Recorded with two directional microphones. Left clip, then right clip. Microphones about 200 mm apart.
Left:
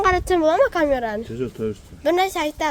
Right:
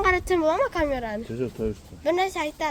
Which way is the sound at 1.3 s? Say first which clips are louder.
Left 2 dB; 5° left (ahead or behind).